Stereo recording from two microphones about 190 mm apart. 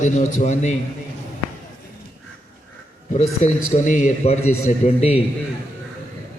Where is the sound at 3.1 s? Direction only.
40° left (ahead or behind).